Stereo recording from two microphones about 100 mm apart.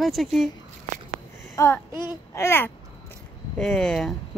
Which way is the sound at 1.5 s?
25° left (ahead or behind).